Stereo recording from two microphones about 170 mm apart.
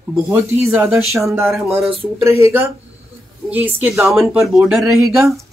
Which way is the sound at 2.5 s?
15° right (ahead or behind).